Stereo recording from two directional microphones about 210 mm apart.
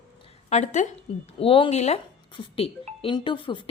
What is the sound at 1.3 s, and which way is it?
A woman's voice, 25° left (ahead or behind).